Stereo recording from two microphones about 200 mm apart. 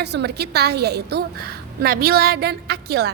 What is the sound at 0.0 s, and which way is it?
A woman's voice, 55° right (ahead or behind).